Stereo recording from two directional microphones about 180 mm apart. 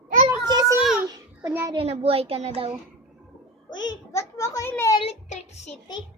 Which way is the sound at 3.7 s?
25° left (ahead or behind).